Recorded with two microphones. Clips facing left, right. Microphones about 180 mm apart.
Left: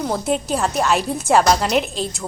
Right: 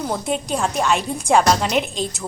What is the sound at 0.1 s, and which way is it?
A woman's voice, centre (ahead or behind).